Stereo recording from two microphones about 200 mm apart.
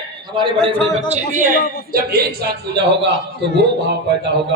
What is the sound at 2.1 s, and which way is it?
Speech, 50° right (ahead or behind).